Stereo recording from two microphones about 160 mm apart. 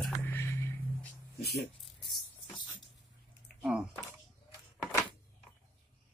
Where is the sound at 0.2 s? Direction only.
15° left (ahead or behind).